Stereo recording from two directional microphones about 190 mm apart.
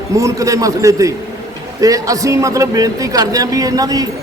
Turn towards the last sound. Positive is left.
turn(degrees=-20)  # may be behind; listen again after turning